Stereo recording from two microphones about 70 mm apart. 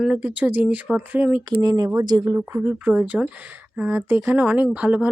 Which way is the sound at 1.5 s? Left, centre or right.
Right.